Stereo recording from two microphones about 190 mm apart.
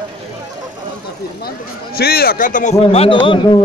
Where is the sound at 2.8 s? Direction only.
30° left (ahead or behind).